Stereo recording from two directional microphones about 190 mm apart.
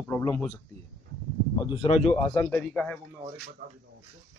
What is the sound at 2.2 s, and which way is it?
Speech, 10° left (ahead or behind).